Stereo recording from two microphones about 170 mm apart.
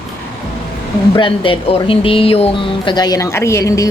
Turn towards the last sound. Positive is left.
turn(degrees=20)  # may be behind; listen again after turning